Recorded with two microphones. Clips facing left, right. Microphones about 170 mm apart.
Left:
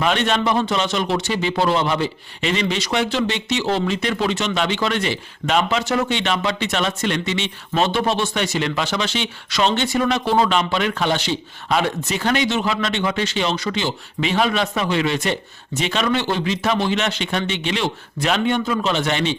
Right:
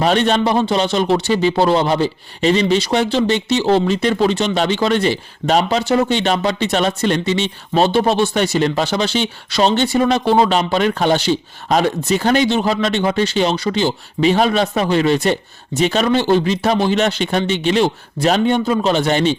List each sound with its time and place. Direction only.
0.0 s a man's voice: 35° right (ahead or behind)